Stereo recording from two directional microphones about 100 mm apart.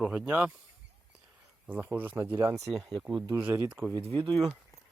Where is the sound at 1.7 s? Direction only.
20° right (ahead or behind).